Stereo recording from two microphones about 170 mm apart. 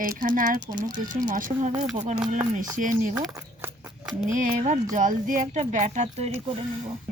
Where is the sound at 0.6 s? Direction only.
25° right (ahead or behind).